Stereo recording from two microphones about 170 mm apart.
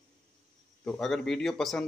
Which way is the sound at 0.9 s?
Centre (ahead or behind).